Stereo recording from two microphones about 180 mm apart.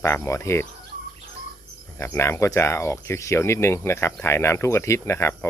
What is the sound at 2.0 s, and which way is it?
Speech, 15° left (ahead or behind).